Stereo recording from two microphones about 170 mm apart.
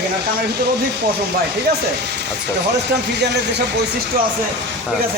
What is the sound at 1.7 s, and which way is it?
Speech, 70° right (ahead or behind).